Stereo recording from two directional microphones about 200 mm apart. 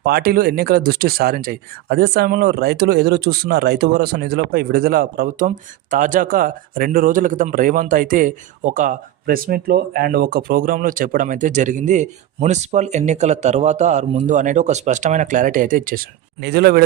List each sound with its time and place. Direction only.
0.0 s speech: 50° right (ahead or behind)